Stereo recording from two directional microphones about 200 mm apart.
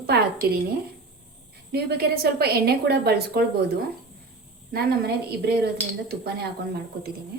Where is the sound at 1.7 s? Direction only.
55° right (ahead or behind).